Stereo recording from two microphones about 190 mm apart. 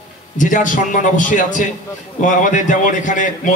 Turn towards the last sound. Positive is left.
turn(degrees=40)  # may be behind; listen again after turning